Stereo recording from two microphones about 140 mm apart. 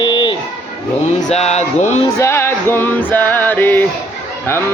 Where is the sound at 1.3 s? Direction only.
50° left (ahead or behind).